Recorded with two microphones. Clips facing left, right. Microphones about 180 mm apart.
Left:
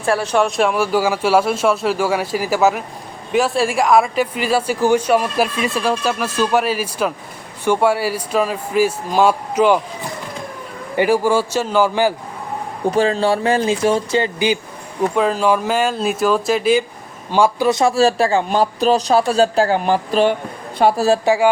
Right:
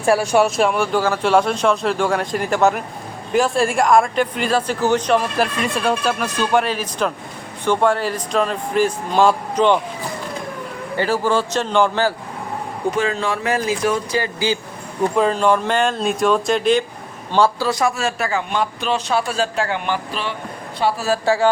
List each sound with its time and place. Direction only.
0.0 s speech: 10° right (ahead or behind); by 9.8 s 5° left (ahead or behind)
10.9 s speech: 15° left (ahead or behind)
13.0 s speech: 35° left (ahead or behind)
15.1 s a man's voice: 5° left (ahead or behind); by 20.3 s 40° left (ahead or behind)
21.2 s speech: 15° left (ahead or behind)